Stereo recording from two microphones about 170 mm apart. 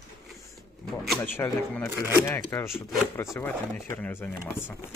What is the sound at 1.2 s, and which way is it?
Speech, 10° left (ahead or behind).